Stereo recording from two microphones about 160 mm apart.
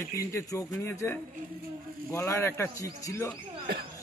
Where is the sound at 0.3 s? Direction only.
20° left (ahead or behind).